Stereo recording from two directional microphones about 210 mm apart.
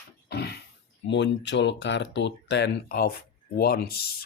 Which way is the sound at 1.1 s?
55° left (ahead or behind).